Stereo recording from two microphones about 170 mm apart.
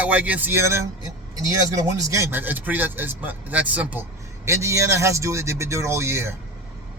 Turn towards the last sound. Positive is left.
turn(degrees=-15)  # may be behind; listen again after turning